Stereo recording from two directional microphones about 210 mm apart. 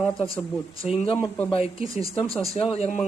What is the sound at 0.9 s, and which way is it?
Speech, 25° left (ahead or behind).